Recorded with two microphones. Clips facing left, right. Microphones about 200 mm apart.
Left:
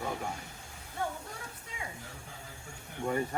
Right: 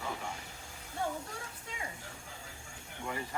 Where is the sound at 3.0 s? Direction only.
40° left (ahead or behind).